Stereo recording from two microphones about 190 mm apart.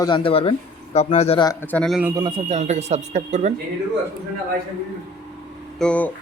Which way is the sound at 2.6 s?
35° right (ahead or behind).